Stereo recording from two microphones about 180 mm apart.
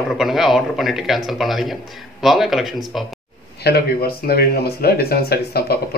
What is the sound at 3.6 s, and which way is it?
Speech, 60° left (ahead or behind).